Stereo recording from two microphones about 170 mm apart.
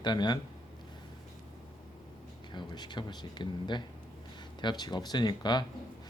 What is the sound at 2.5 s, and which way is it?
Speech, 25° left (ahead or behind).